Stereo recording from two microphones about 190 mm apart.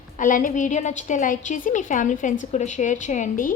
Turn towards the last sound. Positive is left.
turn(degrees=40)  # may be behind; listen again after turning